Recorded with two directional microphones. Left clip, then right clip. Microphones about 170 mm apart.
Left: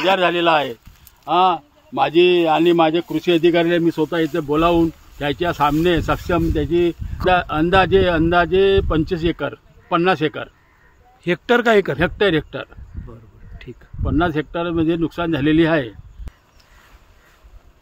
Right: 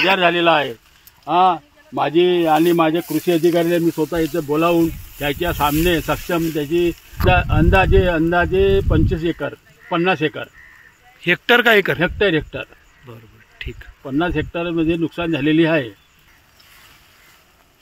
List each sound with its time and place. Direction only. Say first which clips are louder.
0.0 s a man's voice: right 1 dB; 35° right (ahead or behind)
3.8 s speech: even; 5° right (ahead or behind)
4.2 s speech: even; 10° left (ahead or behind)
11.1 s speech: right 3 dB; 5° left (ahead or behind)
12.0 s speech: even; 20° left (ahead or behind)
13.1 s a sound: right 2 dB; 5° left (ahead or behind)
14.0 s speech: left 1 dB; 15° left (ahead or behind)